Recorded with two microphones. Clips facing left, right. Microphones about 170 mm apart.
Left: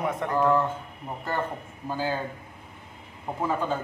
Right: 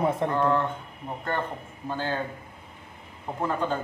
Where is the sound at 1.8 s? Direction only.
5° left (ahead or behind).